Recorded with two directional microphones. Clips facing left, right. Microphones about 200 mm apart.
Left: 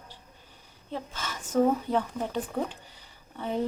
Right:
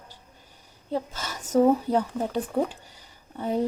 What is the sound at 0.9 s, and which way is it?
Speech, 40° right (ahead or behind).